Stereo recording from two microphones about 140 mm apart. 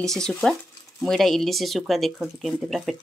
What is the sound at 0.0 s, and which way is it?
Speech, 5° left (ahead or behind).